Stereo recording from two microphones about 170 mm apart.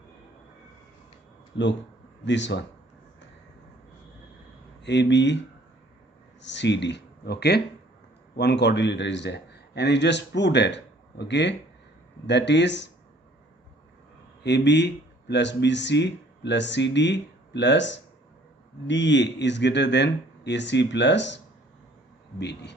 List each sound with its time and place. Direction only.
1.5 s speech: 90° left
4.8 s speech: 90° left
6.4 s speech: 90° left; by 7.6 s 75° left (ahead or behind)
8.4 s speech: 85° left
14.4 s speech: 90° left